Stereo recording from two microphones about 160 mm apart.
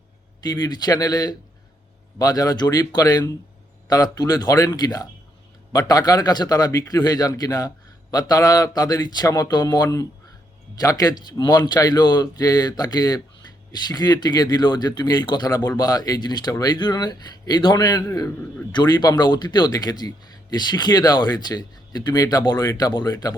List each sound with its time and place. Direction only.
0.4 s speech: 25° left (ahead or behind)